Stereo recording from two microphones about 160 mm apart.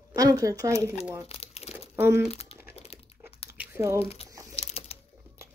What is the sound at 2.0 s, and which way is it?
Speech, 15° right (ahead or behind).